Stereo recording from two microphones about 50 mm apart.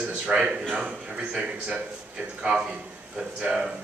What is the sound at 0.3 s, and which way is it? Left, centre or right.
A man's voice, centre.